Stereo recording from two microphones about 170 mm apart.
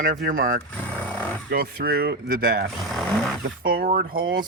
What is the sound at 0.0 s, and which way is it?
Speech, 55° right (ahead or behind).